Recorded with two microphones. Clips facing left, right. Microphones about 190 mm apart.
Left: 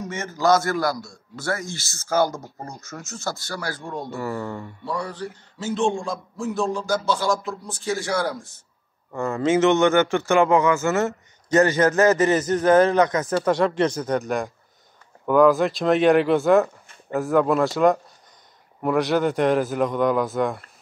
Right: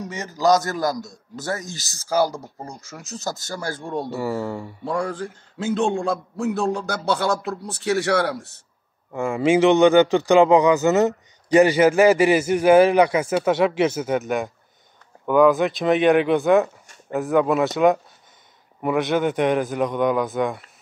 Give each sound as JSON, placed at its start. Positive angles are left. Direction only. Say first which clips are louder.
{"t": 0.3, "sound": "a man's voice", "louder": "right 1 dB", "side_deg": -15}
{"t": 1.7, "sound": "speech", "louder": "left 1 dB", "side_deg": -40}
{"t": 2.0, "sound": "a man's voice", "louder": "right 1 dB", "side_deg": -15}
{"t": 3.8, "sound": "speech", "louder": "right 4 dB", "side_deg": -30}
{"t": 4.2, "sound": "a man's voice", "louder": "right 3 dB", "side_deg": -10}
{"t": 4.9, "sound": "a man's voice", "louder": "right 4 dB", "side_deg": -50}
{"t": 9.1, "sound": "a man's voice", "louder": "right 2 dB", "side_deg": -10}